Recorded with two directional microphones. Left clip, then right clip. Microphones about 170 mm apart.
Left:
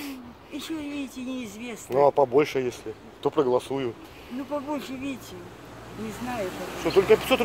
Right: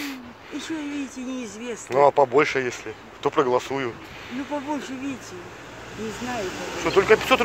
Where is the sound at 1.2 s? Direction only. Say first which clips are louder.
Right 2 dB; 45° left (ahead or behind).